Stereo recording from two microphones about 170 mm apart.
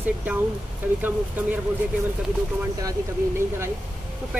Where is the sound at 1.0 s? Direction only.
10° right (ahead or behind).